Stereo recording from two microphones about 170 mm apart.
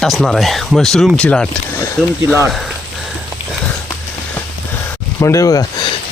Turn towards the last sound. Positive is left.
turn(degrees=20)  # may be behind; listen again after turning